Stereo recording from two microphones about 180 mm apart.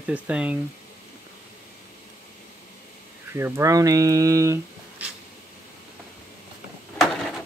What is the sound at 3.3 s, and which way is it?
Speech, 15° right (ahead or behind).